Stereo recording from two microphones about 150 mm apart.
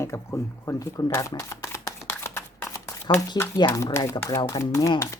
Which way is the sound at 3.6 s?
20° left (ahead or behind).